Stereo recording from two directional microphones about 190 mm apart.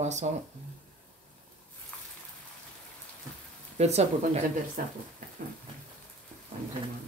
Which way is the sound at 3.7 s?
35° right (ahead or behind).